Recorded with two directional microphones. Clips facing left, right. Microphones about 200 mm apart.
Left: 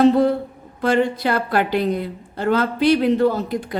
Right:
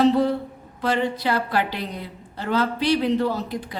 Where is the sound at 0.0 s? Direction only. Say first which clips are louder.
Left 4 dB; 50° left (ahead or behind).